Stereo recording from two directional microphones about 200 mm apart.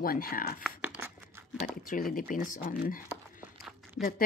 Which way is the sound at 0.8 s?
10° right (ahead or behind).